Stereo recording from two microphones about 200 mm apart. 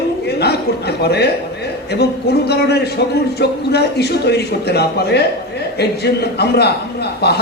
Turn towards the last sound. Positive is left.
turn(degrees=55)  # may be behind; listen again after turning